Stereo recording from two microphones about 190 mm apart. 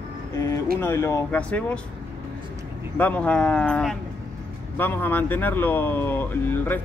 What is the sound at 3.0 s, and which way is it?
Speech, 5° left (ahead or behind).